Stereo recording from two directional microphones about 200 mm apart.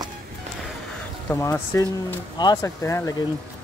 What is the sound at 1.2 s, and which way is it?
Speech, 10° left (ahead or behind).